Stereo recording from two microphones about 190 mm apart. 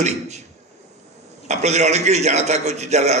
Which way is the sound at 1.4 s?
35° right (ahead or behind).